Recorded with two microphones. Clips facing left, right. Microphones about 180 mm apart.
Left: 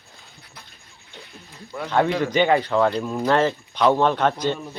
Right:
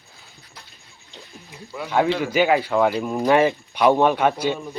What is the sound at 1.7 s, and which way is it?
Speech, 5° right (ahead or behind).